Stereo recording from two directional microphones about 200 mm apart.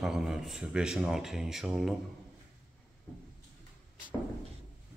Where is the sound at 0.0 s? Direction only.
Centre (ahead or behind).